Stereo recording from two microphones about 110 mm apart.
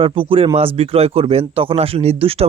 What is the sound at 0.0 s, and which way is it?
Speech, 55° right (ahead or behind).